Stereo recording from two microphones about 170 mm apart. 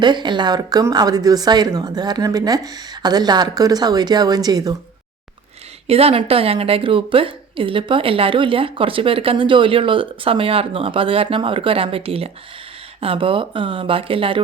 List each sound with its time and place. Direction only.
0.0 s a woman's voice: 25° right (ahead or behind)
5.9 s a woman's voice: 35° right (ahead or behind)